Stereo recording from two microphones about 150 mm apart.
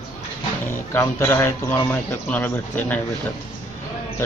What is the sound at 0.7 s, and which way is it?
A man's voice, 15° left (ahead or behind).